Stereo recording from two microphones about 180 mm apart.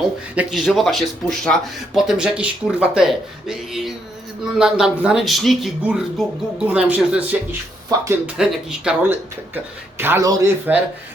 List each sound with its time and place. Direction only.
0.0 s speech: centre (ahead or behind); by 8.2 s 15° right (ahead or behind)
8.4 s speech: 5° right (ahead or behind)